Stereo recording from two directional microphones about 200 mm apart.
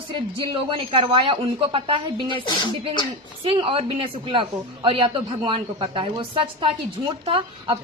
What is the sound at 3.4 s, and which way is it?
A woman's voice, 25° right (ahead or behind).